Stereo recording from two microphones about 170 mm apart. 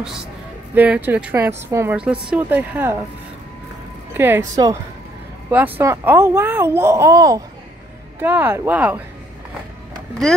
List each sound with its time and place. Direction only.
0.0 s speech: 5° right (ahead or behind)
4.2 s speech: 15° right (ahead or behind)
5.8 s speech: 15° right (ahead or behind)